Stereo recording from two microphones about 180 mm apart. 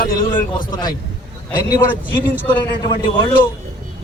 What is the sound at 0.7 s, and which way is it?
A man's voice, 25° left (ahead or behind).